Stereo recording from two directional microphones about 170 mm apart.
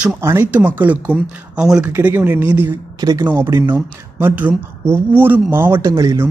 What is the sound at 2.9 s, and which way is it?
Speech, 20° right (ahead or behind).